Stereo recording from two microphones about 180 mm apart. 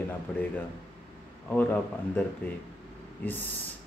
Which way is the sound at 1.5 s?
10° left (ahead or behind).